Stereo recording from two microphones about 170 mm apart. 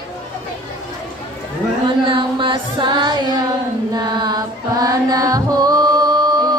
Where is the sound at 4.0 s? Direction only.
25° right (ahead or behind).